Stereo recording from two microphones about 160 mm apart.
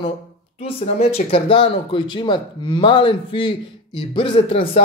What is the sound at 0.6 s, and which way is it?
Speech, 40° left (ahead or behind).